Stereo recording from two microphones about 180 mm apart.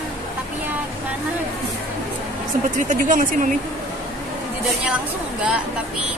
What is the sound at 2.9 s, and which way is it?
Speech, 45° right (ahead or behind).